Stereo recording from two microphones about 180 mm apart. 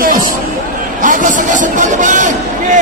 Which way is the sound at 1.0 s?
45° right (ahead or behind).